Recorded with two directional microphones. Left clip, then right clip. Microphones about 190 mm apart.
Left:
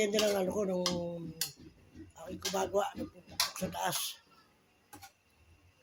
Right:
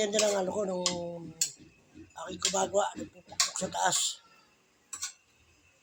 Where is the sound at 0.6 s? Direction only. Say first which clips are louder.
Right 2 dB; 20° left (ahead or behind).